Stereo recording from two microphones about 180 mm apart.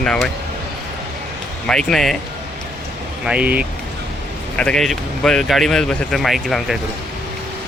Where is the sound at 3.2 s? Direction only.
5° right (ahead or behind).